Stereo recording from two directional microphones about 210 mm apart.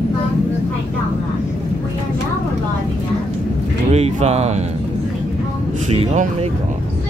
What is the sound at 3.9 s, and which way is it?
Speech, 30° right (ahead or behind).